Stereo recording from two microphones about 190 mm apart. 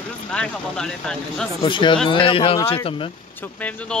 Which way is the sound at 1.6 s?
25° left (ahead or behind).